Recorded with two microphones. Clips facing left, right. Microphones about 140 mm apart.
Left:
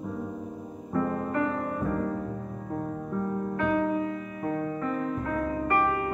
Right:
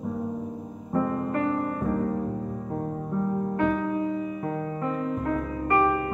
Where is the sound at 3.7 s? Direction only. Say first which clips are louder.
Left 1 dB; 15° left (ahead or behind).